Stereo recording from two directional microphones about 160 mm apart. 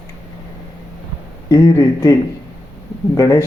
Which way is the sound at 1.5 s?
20° left (ahead or behind).